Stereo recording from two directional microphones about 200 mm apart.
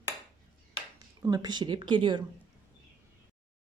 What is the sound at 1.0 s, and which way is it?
Speech, 20° right (ahead or behind).